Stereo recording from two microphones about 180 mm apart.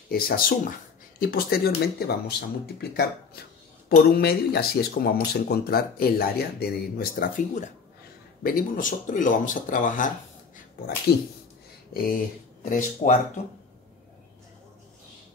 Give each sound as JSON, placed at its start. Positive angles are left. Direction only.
{"t": 0.1, "sound": "speech", "side_deg": 55}
{"t": 11.9, "sound": "speech", "side_deg": 55}
{"t": 12.6, "sound": "speech", "side_deg": 45}